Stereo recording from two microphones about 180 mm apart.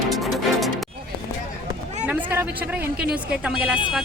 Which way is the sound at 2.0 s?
10° right (ahead or behind).